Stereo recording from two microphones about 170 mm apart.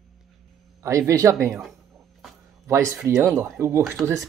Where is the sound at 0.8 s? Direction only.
20° right (ahead or behind).